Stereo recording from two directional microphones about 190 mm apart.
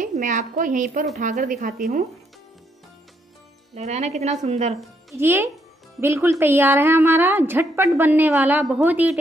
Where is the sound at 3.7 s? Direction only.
35° right (ahead or behind).